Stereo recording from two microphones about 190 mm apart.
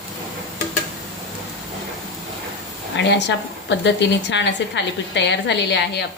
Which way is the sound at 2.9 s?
70° left (ahead or behind).